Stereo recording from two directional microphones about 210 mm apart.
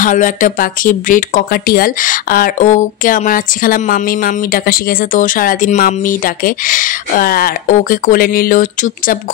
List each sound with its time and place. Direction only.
0.0 s speech: 40° left (ahead or behind)